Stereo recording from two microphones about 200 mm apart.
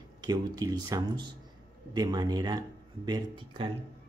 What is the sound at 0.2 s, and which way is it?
Speech, 20° right (ahead or behind).